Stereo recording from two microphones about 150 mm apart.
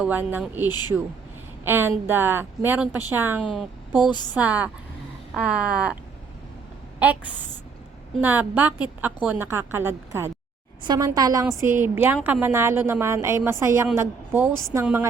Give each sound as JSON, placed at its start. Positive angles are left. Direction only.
{"t": 0.0, "sound": "a woman's voice", "side_deg": -10}
{"t": 0.7, "sound": "speech", "side_deg": 25}
{"t": 1.6, "sound": "a woman's voice", "side_deg": -15}
{"t": 3.5, "sound": "a woman's voice", "side_deg": 0}
{"t": 8.2, "sound": "a woman's voice", "side_deg": -10}